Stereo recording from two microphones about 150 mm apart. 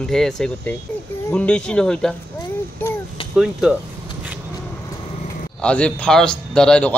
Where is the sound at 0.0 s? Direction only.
5° left (ahead or behind).